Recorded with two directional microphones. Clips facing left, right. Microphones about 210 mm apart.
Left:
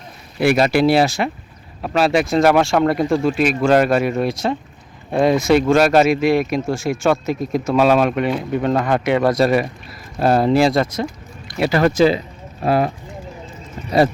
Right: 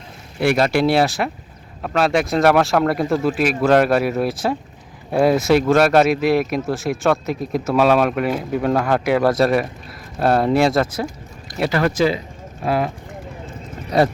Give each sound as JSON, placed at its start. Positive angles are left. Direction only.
{"t": 0.4, "sound": "speech", "side_deg": 5}
{"t": 11.7, "sound": "speech", "side_deg": 25}